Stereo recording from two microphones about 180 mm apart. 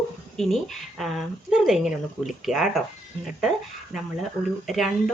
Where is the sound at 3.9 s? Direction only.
Centre (ahead or behind).